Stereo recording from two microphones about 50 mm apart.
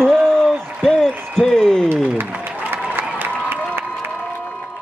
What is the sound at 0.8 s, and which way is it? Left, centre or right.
Applause, centre.